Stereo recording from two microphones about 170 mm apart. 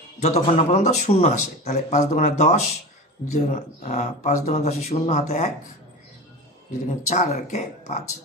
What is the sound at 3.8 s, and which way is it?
Speech, 45° left (ahead or behind).